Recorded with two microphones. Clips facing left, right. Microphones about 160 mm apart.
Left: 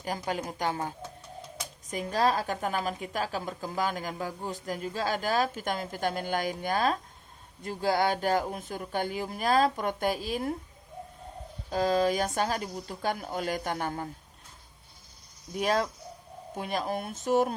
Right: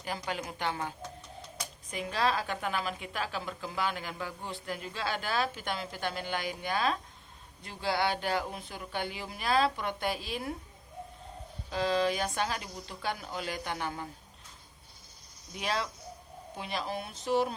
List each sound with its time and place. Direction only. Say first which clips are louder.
0.3 s a woman's voice: left 4 dB; 40° left (ahead or behind)
11.7 s a woman's voice: left 3 dB; 45° left (ahead or behind)
15.5 s a woman's voice: left 6 dB; 45° left (ahead or behind)